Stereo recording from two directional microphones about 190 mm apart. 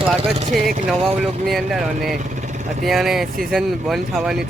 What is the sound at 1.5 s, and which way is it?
Speech, centre (ahead or behind).